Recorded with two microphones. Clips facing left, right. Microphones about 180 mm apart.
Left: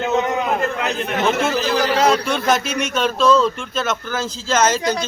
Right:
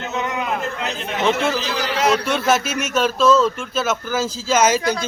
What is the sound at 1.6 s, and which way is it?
Speech, 45° left (ahead or behind).